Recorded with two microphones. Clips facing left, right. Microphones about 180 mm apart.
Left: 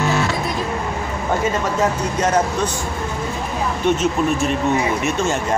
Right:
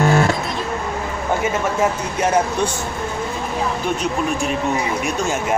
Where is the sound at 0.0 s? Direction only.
50° right (ahead or behind).